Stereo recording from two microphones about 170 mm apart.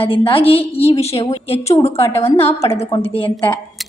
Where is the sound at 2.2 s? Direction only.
35° left (ahead or behind).